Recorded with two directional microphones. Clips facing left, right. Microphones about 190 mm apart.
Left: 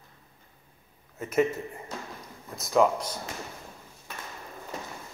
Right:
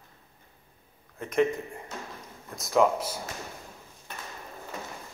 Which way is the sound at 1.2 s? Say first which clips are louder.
Even; 5° left (ahead or behind).